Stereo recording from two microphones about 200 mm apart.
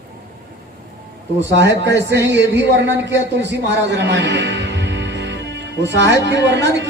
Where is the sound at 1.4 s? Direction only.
60° right (ahead or behind).